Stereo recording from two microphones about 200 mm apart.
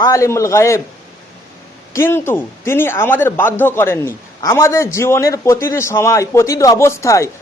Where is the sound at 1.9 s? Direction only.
10° left (ahead or behind).